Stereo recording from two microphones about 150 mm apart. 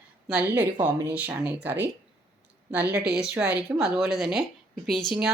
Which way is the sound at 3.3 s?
15° right (ahead or behind).